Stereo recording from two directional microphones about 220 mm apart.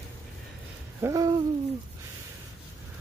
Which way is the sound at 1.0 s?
15° right (ahead or behind).